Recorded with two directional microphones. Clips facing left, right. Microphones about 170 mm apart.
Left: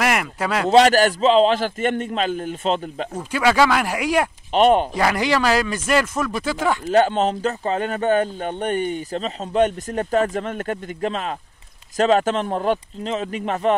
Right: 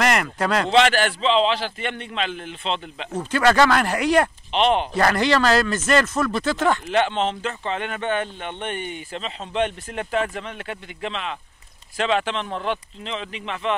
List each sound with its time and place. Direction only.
0.0 s speech: 5° left (ahead or behind)
0.7 s a man's voice: 40° left (ahead or behind)
3.2 s speech: 10° left (ahead or behind)
4.5 s a man's voice: 45° left (ahead or behind)
4.9 s speech: 10° left (ahead or behind)
6.9 s a man's voice: 40° left (ahead or behind)